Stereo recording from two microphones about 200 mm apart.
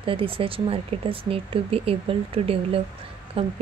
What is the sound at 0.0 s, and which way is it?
Speech, 25° right (ahead or behind).